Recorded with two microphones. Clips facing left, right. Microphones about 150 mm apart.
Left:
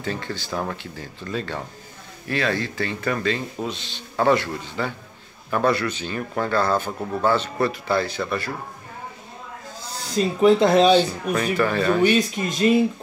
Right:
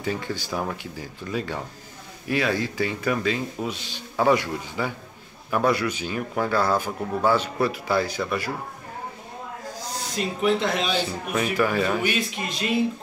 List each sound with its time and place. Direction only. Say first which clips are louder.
0.0 s speech: right 1 dB; 10° right (ahead or behind)
10.1 s speech: left 7 dB; 35° left (ahead or behind)
11.5 s speech: left 2 dB; 10° right (ahead or behind)
12.2 s speech: left 7 dB; 45° left (ahead or behind)